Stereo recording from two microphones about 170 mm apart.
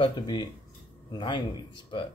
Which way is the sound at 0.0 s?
25° left (ahead or behind).